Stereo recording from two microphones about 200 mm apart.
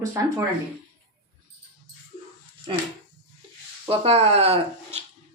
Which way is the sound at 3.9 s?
30° right (ahead or behind).